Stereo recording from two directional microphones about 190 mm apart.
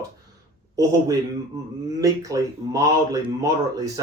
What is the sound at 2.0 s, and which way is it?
Speech, 20° right (ahead or behind).